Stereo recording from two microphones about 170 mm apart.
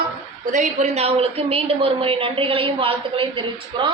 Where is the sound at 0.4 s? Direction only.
45° right (ahead or behind).